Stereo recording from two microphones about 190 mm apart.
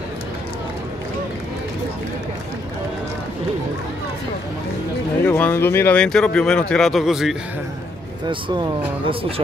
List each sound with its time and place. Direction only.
5.2 s speech: 10° left (ahead or behind)
8.3 s speech: 25° right (ahead or behind)